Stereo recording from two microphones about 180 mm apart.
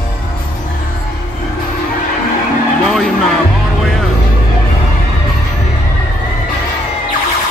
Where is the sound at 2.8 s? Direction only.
Centre (ahead or behind).